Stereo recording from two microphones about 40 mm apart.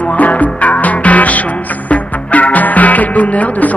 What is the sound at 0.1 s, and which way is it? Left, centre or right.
Music, left.